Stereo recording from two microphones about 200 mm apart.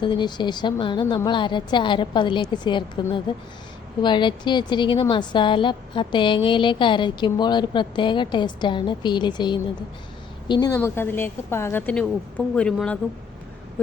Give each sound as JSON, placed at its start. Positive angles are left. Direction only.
{"t": 0.0, "sound": "a woman's voice", "side_deg": 25}